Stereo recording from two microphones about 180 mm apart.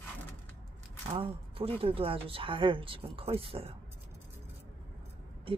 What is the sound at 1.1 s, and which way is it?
Speech, 30° right (ahead or behind).